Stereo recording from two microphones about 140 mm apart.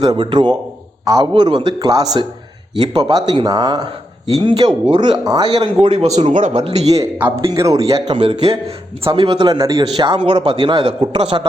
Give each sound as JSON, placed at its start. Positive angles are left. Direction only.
{"t": 0.0, "sound": "a man's voice", "side_deg": -30}
{"t": 5.8, "sound": "a man's voice", "side_deg": -50}
{"t": 6.1, "sound": "speech", "side_deg": -60}
{"t": 7.2, "sound": "speech", "side_deg": -15}
{"t": 8.1, "sound": "a man's voice", "side_deg": -40}